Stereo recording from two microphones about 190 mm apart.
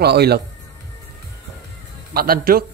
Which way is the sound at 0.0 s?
60° right (ahead or behind).